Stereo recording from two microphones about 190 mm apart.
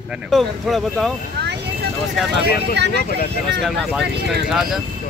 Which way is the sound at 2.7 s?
60° right (ahead or behind).